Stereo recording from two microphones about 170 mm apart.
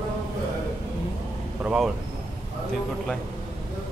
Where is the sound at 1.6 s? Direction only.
5° right (ahead or behind).